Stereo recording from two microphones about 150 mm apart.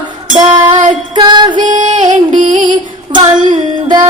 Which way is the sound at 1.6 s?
60° right (ahead or behind).